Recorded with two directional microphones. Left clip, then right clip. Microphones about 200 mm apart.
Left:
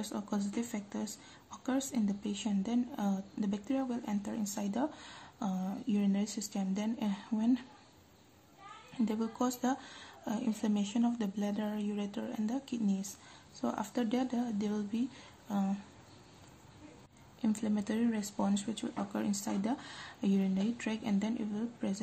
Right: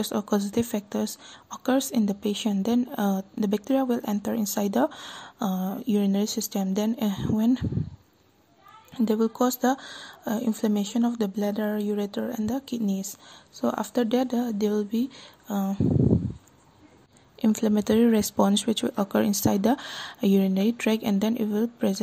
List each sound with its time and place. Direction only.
0.0 s speech: 45° right (ahead or behind)
8.9 s speech: 40° right (ahead or behind)
17.4 s speech: 45° right (ahead or behind)